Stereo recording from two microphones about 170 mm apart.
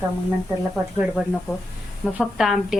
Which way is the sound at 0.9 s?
5° right (ahead or behind).